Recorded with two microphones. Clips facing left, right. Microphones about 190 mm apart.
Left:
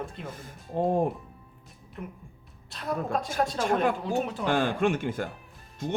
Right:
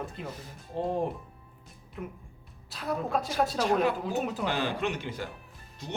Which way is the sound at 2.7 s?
Centre (ahead or behind).